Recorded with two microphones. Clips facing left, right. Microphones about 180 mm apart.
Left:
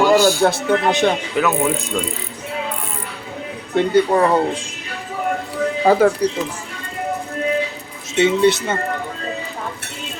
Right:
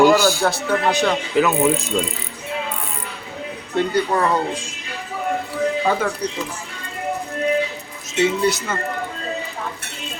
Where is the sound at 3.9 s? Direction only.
25° left (ahead or behind).